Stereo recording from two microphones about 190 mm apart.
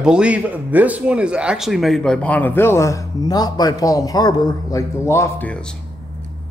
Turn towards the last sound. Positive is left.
turn(degrees=5)  # may be behind; listen again after turning